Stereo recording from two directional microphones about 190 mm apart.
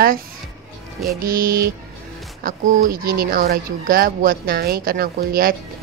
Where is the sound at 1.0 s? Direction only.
50° right (ahead or behind).